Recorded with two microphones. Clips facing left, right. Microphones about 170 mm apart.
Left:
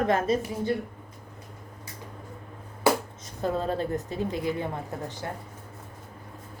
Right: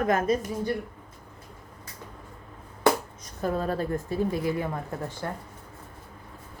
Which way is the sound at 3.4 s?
25° left (ahead or behind).